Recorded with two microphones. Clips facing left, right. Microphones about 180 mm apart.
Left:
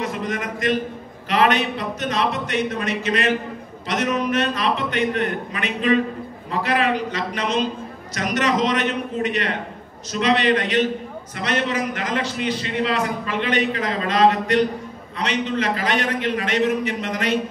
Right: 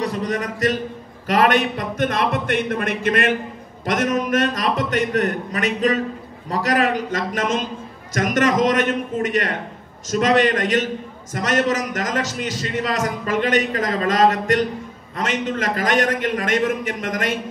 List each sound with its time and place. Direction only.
0.0 s a man's voice: 35° right (ahead or behind)
1.3 s a man's voice: 50° right (ahead or behind)